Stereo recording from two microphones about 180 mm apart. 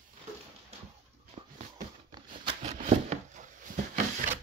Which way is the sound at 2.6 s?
40° right (ahead or behind).